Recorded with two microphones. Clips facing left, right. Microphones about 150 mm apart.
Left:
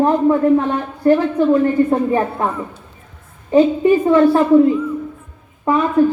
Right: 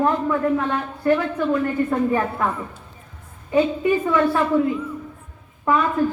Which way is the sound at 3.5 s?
30° left (ahead or behind).